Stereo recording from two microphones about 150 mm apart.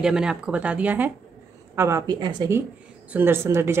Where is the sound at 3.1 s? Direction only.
15° right (ahead or behind).